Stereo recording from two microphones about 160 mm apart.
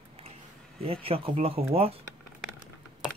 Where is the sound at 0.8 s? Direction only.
35° right (ahead or behind).